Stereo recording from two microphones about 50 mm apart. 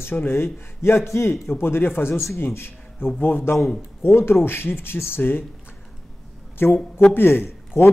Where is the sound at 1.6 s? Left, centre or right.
Left.